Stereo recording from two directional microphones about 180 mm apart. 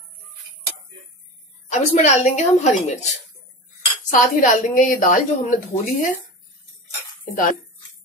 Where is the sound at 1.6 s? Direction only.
40° left (ahead or behind).